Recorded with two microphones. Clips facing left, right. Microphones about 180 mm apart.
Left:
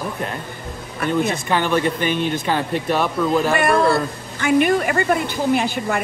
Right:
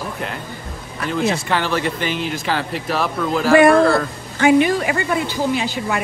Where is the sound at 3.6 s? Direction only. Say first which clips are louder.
Right 5 dB; 55° right (ahead or behind).